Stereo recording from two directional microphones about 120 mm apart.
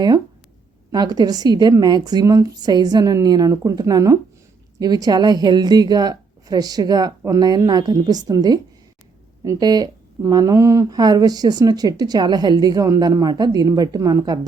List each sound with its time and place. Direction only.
0.9 s speech: 35° right (ahead or behind)